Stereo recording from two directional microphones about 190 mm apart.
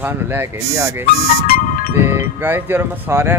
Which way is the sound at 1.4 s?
50° left (ahead or behind).